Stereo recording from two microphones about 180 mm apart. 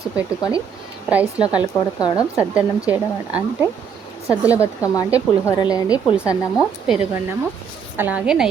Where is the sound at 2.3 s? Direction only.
10° right (ahead or behind).